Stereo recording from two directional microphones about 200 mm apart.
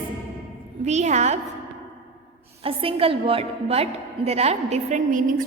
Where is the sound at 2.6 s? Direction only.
30° right (ahead or behind).